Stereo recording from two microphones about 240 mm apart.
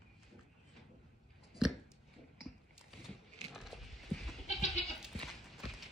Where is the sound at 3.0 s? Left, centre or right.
Centre.